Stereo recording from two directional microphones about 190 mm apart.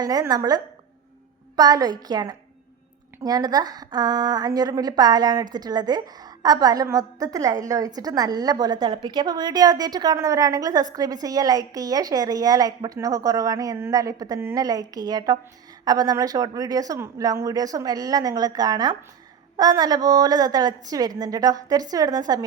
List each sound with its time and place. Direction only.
0.0 s a woman's voice: 20° right (ahead or behind)